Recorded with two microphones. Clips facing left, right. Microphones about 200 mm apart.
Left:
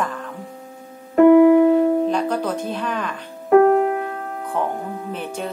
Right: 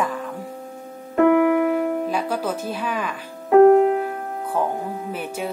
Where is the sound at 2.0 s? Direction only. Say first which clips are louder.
Left 3 dB; 5° right (ahead or behind).